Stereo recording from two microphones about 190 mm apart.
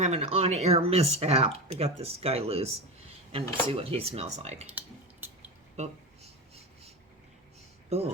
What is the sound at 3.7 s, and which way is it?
Speech, 30° right (ahead or behind).